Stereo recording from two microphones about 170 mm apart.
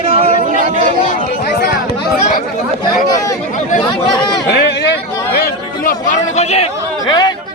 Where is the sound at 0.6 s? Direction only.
50° right (ahead or behind).